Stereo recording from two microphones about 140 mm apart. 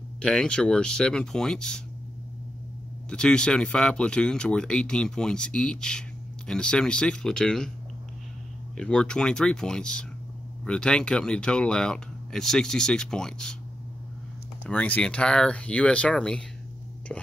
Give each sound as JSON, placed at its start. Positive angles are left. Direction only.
{"t": 0.2, "sound": "speech", "side_deg": 5}
{"t": 3.1, "sound": "speech", "side_deg": 5}
{"t": 8.7, "sound": "speech", "side_deg": 5}
{"t": 14.7, "sound": "speech", "side_deg": 10}